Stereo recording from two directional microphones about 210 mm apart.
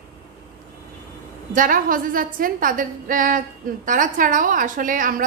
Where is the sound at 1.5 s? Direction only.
40° right (ahead or behind).